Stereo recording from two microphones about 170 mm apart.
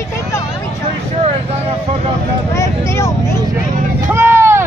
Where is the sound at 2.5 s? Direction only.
15° left (ahead or behind).